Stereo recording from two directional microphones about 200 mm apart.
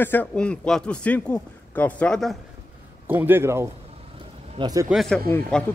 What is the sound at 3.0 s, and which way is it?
A man's voice, 10° right (ahead or behind).